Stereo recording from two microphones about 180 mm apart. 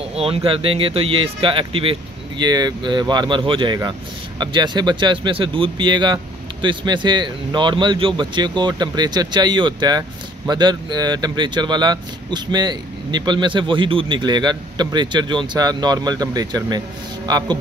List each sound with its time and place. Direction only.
0.1 s speech: 35° right (ahead or behind)